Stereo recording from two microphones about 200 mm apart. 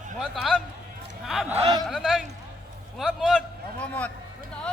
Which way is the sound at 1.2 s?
Centre (ahead or behind).